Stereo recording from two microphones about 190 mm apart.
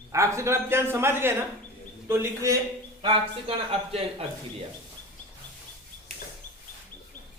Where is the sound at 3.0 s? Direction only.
30° right (ahead or behind).